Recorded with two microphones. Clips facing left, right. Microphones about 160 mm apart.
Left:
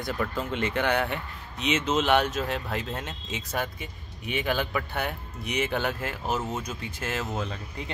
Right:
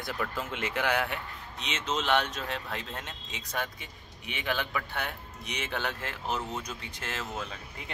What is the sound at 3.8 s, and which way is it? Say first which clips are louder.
Speech: left 7 dB; 50° left (ahead or behind).